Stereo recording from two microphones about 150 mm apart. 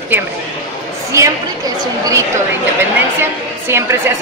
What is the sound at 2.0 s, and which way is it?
A woman's voice, 20° right (ahead or behind).